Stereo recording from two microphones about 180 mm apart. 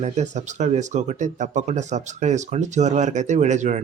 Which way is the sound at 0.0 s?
40° right (ahead or behind).